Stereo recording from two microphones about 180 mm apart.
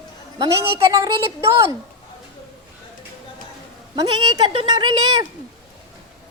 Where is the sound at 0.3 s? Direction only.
20° right (ahead or behind).